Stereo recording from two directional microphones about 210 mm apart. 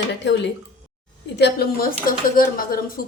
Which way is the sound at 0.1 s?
55° left (ahead or behind).